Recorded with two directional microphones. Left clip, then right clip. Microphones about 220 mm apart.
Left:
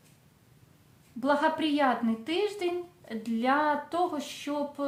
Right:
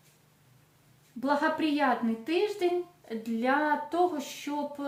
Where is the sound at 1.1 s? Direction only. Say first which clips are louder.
Left 1 dB; 25° left (ahead or behind).